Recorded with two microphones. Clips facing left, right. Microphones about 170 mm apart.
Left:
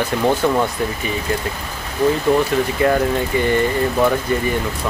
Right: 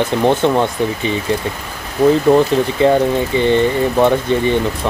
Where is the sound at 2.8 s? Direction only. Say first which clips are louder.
Right 5 dB; 20° right (ahead or behind).